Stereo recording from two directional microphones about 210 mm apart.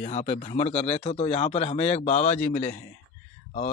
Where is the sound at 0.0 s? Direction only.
30° left (ahead or behind).